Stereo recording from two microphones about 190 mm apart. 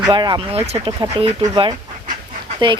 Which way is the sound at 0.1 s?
25° right (ahead or behind).